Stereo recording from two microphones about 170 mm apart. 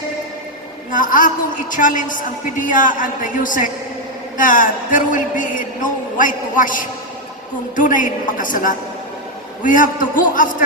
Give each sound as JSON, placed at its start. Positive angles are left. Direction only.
{"t": 0.9, "sound": "a man's voice", "side_deg": 50}